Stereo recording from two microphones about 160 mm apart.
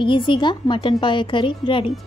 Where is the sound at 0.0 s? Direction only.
30° left (ahead or behind).